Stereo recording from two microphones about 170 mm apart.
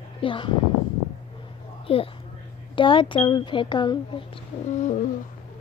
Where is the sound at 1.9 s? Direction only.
35° left (ahead or behind).